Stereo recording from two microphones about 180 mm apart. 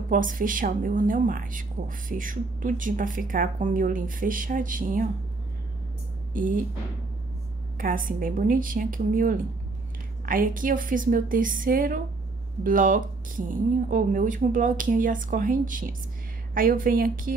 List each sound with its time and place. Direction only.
0.1 s a woman's voice: 50° right (ahead or behind)
6.3 s a woman's voice: 45° right (ahead or behind)
7.7 s a woman's voice: 50° right (ahead or behind)